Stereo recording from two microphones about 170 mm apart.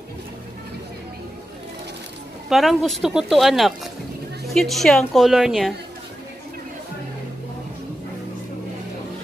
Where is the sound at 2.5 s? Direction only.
Centre (ahead or behind).